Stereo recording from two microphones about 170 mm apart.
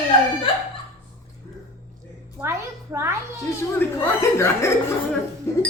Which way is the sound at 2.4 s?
15° right (ahead or behind).